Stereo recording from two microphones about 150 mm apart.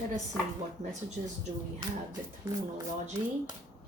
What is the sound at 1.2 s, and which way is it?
Speech, 55° right (ahead or behind).